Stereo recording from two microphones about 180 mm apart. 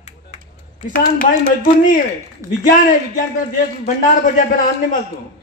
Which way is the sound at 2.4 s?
20° right (ahead or behind).